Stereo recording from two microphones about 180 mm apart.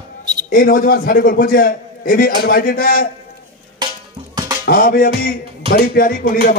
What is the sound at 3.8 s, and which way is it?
Music, 25° right (ahead or behind).